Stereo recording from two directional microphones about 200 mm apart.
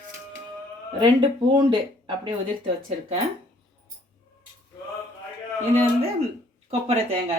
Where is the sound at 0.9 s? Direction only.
25° right (ahead or behind).